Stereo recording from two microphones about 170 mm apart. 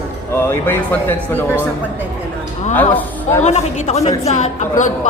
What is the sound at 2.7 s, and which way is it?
Speech, 10° left (ahead or behind).